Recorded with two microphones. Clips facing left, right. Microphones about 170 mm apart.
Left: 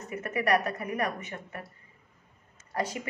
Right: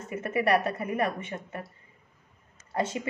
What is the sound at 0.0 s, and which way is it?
A woman's voice, 25° right (ahead or behind).